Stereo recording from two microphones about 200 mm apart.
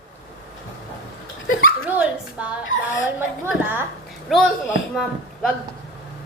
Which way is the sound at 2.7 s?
75° left (ahead or behind).